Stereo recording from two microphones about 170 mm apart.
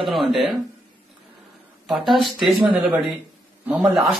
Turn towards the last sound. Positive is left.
turn(degrees=0)  # may be behind; listen again after turning